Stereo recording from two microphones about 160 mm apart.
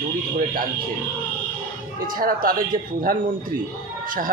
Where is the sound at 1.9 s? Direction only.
65° right (ahead or behind).